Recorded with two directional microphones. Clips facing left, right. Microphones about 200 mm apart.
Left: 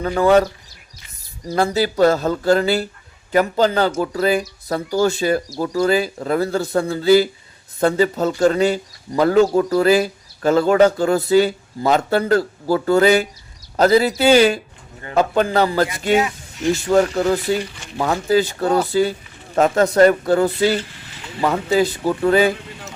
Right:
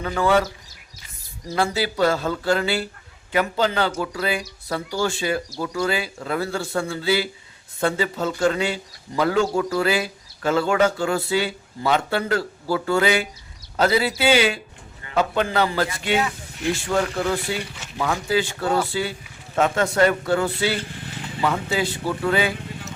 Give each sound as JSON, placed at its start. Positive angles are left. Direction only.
{"t": 0.0, "sound": "speech", "side_deg": 40}
{"t": 1.5, "sound": "speech", "side_deg": 40}